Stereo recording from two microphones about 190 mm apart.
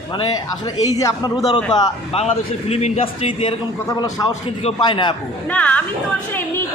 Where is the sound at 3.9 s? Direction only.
20° left (ahead or behind).